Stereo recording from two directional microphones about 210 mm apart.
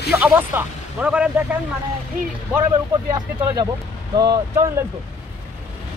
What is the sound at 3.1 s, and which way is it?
Speech, 20° right (ahead or behind).